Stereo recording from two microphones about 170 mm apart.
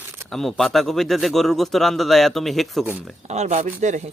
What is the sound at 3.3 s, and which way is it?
Speech, 40° right (ahead or behind).